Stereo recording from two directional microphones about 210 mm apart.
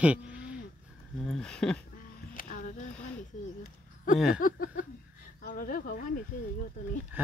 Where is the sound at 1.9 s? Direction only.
40° left (ahead or behind).